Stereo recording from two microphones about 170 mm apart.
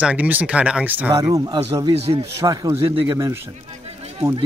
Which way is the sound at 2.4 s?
20° right (ahead or behind).